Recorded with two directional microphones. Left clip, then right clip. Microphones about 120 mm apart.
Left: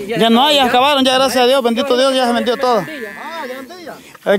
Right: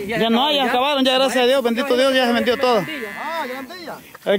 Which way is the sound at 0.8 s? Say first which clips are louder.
Left 6 dB; 90° left.